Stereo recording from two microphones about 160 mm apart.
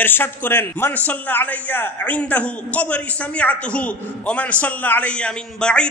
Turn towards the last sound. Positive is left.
turn(degrees=5)  # may be behind; listen again after turning